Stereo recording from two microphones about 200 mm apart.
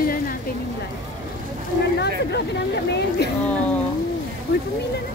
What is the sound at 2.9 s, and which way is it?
Speech, 55° left (ahead or behind).